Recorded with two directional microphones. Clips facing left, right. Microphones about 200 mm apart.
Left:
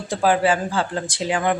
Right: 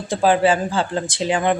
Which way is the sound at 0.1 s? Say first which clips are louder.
Right 2 dB; 25° right (ahead or behind).